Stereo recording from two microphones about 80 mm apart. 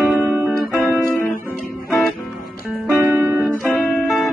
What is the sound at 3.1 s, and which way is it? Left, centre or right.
Music, right.